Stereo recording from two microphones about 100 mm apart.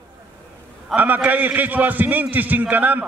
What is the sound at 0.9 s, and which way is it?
A man's voice, 15° right (ahead or behind).